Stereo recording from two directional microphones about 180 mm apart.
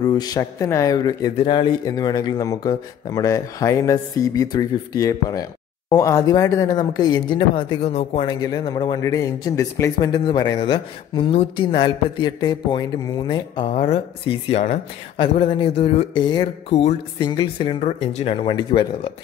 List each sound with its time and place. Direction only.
0.0 s a man's voice: 20° left (ahead or behind); by 14.8 s 40° left (ahead or behind)
15.1 s a man's voice: 30° left (ahead or behind)